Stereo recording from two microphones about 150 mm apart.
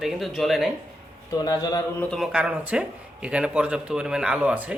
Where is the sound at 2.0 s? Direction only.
5° left (ahead or behind).